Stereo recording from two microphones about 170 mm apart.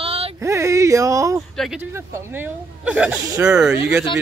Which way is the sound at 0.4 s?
15° right (ahead or behind).